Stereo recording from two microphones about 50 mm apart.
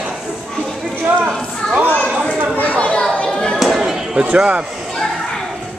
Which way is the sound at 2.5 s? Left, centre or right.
Left.